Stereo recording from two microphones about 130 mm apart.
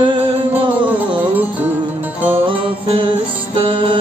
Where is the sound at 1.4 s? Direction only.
10° right (ahead or behind).